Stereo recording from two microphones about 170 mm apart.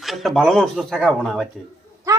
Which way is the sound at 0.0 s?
Centre (ahead or behind).